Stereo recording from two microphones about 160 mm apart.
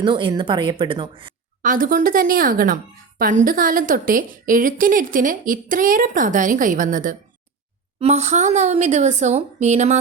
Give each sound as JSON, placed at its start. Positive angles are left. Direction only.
{"t": 0.0, "sound": "speech", "side_deg": -30}
{"t": 1.6, "sound": "a woman's voice", "side_deg": -60}
{"t": 7.9, "sound": "speech", "side_deg": -45}